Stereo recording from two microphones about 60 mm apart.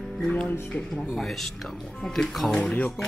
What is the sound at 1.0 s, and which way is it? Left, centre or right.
Speech, centre.